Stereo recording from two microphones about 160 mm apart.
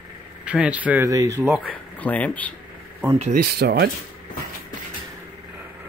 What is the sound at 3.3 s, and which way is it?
Speech, 75° right (ahead or behind).